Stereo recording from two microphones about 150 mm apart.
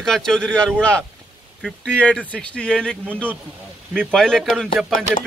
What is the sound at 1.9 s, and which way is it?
A man's voice, 10° left (ahead or behind).